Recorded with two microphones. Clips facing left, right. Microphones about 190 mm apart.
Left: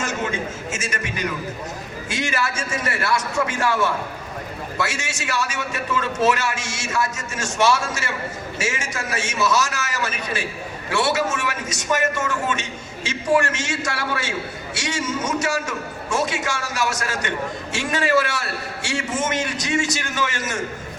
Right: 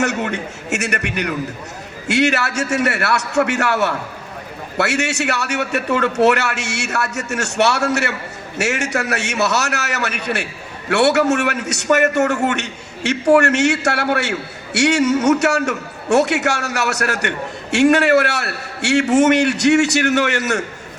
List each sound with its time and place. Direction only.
0.0 s a man's voice: 70° right (ahead or behind)